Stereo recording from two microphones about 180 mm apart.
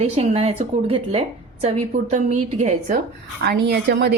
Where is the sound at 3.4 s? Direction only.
60° right (ahead or behind).